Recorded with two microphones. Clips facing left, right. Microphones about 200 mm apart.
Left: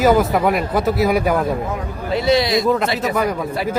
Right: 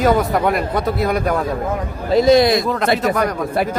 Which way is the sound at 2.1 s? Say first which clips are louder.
Right 5 dB; 45° right (ahead or behind).